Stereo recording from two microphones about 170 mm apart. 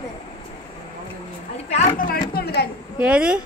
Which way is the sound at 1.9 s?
60° left (ahead or behind).